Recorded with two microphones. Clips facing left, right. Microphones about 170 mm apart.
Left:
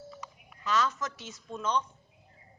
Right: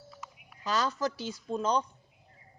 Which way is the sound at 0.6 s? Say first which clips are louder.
Even; 35° right (ahead or behind).